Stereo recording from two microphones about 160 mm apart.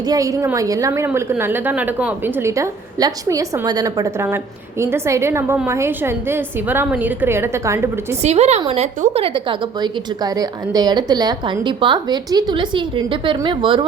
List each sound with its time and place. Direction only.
0.1 s a woman's voice: 20° right (ahead or behind)
8.2 s a woman's voice: 45° right (ahead or behind)